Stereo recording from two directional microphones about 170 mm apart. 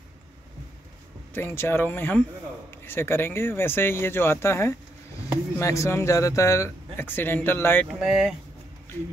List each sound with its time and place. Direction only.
1.3 s speech: 15° left (ahead or behind)
7.9 s speech: centre (ahead or behind)